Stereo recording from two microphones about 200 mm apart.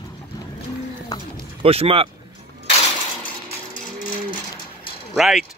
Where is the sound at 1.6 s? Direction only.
30° right (ahead or behind).